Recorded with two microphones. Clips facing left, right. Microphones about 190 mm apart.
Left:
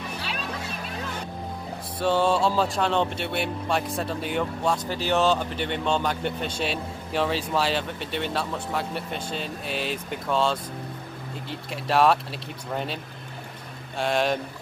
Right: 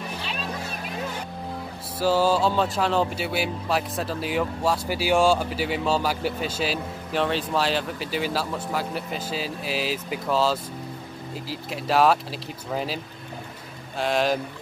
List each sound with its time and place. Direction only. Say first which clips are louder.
2.0 s speech: right 1 dB; 5° right (ahead or behind)